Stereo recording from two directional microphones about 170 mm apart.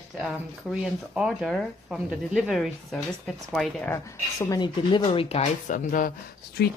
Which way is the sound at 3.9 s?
20° left (ahead or behind).